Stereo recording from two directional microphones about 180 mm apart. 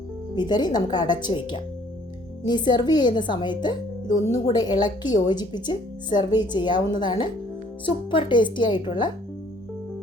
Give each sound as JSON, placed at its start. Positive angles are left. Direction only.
{"t": 0.3, "sound": "speech", "side_deg": 25}